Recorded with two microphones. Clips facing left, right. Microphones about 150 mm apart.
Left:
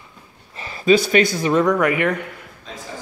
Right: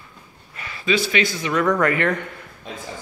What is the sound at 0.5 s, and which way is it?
Speech, 35° left (ahead or behind).